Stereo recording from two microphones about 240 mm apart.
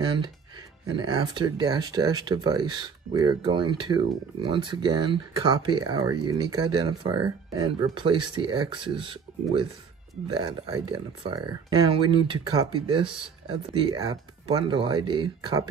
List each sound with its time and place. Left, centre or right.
0.0 s a sound: right
0.9 s speech: centre
11.2 s speech: centre